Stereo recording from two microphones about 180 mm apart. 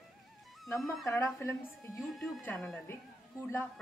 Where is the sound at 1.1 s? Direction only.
15° left (ahead or behind).